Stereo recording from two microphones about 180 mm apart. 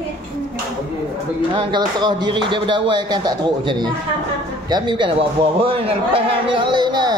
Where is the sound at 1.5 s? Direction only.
25° right (ahead or behind).